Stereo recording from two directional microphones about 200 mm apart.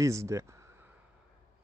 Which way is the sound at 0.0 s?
15° right (ahead or behind).